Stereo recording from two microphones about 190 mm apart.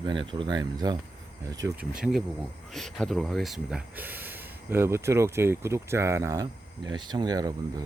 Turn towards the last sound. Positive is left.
turn(degrees=-20)  # may be behind; listen again after turning